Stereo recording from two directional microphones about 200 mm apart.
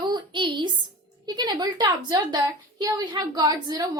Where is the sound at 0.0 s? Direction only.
20° right (ahead or behind).